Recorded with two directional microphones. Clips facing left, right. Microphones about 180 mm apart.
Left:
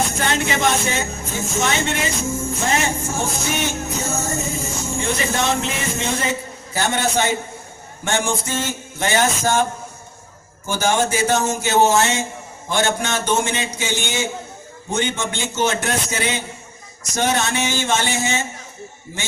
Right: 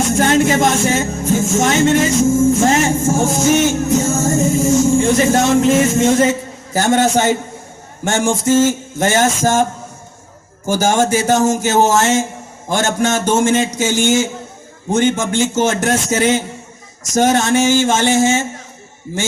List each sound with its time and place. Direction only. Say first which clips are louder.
0.2 s music: right 11 dB; 45° right (ahead or behind)
10.7 s music: right 5 dB; 45° right (ahead or behind)